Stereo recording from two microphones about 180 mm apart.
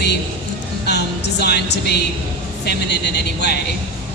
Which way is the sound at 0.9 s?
70° left (ahead or behind).